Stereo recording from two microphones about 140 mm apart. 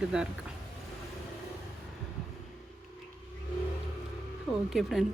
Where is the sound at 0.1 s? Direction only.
5° right (ahead or behind).